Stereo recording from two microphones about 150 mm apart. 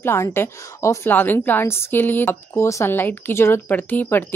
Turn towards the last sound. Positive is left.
turn(degrees=15)  # may be behind; listen again after turning